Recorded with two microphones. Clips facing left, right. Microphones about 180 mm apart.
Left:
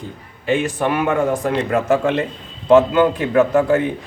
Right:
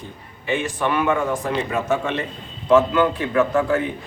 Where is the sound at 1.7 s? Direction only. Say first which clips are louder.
Left 5 dB; 80° left.